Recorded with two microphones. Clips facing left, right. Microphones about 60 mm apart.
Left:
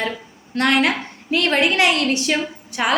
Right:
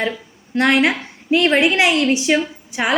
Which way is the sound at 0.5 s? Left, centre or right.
Centre.